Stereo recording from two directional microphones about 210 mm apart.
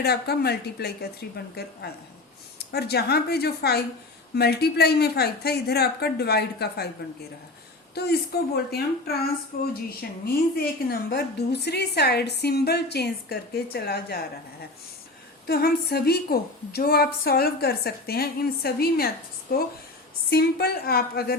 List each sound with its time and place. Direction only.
0.0 s a woman's voice: 50° left (ahead or behind)
2.6 s a woman's voice: 50° left (ahead or behind)
7.9 s a woman's voice: 50° left (ahead or behind)
15.4 s a woman's voice: 45° left (ahead or behind)